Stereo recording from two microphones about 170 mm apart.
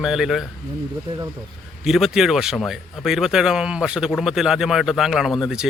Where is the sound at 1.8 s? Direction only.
Centre (ahead or behind).